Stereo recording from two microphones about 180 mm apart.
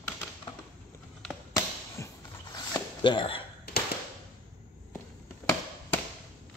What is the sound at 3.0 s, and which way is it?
Speech, 25° left (ahead or behind).